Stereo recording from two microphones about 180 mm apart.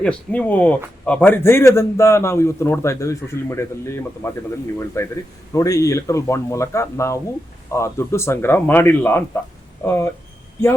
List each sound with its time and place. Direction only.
0.0 s a man's voice: 5° left (ahead or behind)